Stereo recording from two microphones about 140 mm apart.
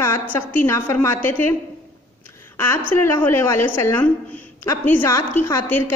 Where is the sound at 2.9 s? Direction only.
20° left (ahead or behind).